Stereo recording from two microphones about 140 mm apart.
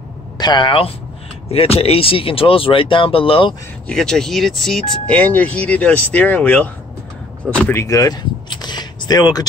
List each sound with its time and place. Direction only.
0.4 s speech: 30° left (ahead or behind)
3.8 s speech: 5° left (ahead or behind); by 9.5 s 25° left (ahead or behind)